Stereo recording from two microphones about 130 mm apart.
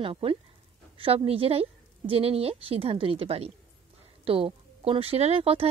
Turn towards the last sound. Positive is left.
turn(degrees=-45)  # may be behind; listen again after turning